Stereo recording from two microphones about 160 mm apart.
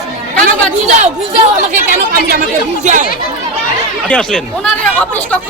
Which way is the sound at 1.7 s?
65° right (ahead or behind).